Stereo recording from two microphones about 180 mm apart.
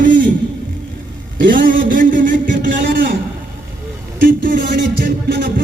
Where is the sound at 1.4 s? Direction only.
50° right (ahead or behind).